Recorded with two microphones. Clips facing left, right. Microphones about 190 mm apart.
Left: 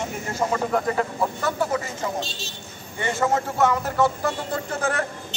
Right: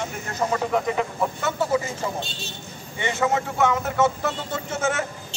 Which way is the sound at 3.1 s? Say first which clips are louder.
Left 1 dB; centre (ahead or behind).